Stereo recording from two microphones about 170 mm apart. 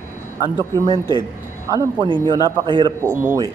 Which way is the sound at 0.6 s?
25° right (ahead or behind).